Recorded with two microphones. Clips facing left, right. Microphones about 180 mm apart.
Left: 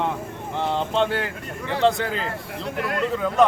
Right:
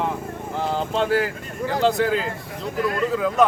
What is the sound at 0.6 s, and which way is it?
Speech, 5° right (ahead or behind).